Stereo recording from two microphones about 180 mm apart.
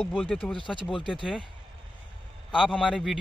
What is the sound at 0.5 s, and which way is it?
Speech, 25° left (ahead or behind).